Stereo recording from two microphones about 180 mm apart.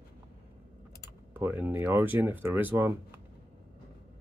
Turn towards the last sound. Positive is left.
turn(degrees=-10)  # may be behind; listen again after turning